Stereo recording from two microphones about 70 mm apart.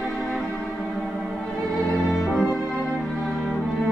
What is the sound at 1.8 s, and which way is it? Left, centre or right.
Music, centre.